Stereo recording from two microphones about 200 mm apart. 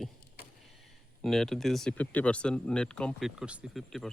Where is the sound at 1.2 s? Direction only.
Centre (ahead or behind).